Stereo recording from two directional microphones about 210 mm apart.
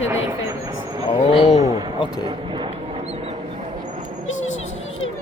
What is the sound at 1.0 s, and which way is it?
Speech, 25° left (ahead or behind).